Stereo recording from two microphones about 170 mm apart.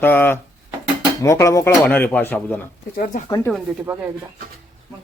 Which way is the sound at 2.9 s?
50° left (ahead or behind).